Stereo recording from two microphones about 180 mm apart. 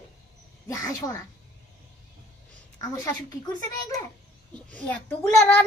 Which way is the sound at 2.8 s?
20° left (ahead or behind).